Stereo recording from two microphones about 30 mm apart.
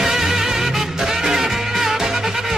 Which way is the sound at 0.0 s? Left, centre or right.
Centre.